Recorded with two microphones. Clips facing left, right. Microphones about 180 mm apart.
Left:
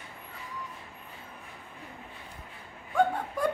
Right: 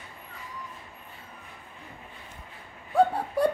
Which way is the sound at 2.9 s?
35° right (ahead or behind).